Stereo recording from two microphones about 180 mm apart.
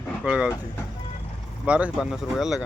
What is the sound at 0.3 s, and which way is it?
Speech, 5° right (ahead or behind).